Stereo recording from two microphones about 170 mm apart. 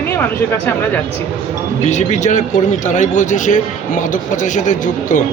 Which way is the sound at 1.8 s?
45° left (ahead or behind).